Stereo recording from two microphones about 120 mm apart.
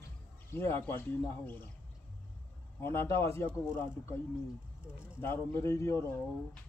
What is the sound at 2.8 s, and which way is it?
Speech, 20° left (ahead or behind).